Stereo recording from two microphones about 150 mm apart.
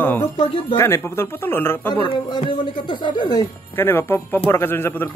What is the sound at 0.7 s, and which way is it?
Speech, 20° left (ahead or behind).